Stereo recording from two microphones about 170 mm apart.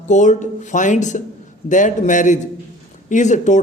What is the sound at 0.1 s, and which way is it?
A man's voice, 45° left (ahead or behind).